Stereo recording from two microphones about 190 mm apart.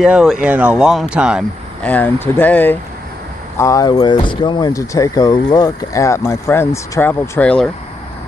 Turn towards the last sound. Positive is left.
turn(degrees=5)  # may be behind; listen again after turning